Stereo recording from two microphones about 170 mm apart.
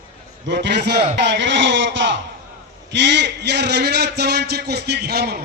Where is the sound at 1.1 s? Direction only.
90° right.